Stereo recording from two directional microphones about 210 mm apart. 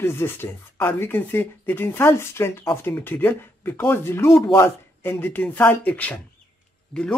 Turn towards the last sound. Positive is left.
turn(degrees=5)  # may be behind; listen again after turning